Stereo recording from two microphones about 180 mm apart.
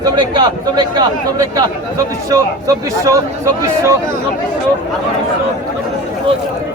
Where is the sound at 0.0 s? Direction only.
25° right (ahead or behind).